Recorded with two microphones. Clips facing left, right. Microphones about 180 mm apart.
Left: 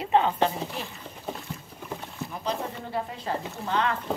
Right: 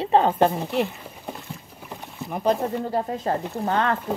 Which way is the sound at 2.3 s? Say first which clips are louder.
Right 10 dB; 50° right (ahead or behind).